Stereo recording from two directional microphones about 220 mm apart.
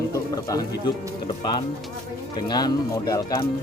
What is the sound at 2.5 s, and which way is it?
Speech, 20° left (ahead or behind).